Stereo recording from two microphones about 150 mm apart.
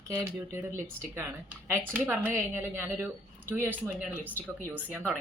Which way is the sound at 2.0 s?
10° right (ahead or behind).